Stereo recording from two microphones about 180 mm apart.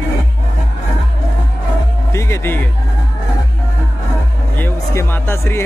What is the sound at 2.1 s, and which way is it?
Speech, 15° left (ahead or behind).